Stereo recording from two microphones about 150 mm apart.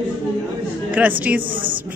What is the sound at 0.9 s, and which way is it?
Speech, 10° right (ahead or behind).